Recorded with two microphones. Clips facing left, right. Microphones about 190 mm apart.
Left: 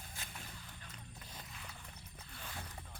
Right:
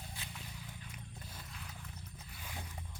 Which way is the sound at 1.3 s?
Centre (ahead or behind).